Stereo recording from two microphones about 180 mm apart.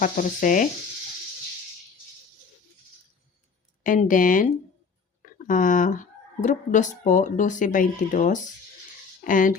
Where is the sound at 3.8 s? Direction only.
45° left (ahead or behind).